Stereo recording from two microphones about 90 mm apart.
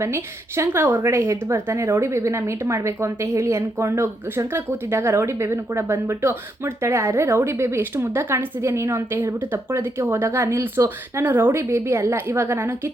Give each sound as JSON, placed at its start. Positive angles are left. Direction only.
{"t": 0.0, "sound": "a woman's voice", "side_deg": -30}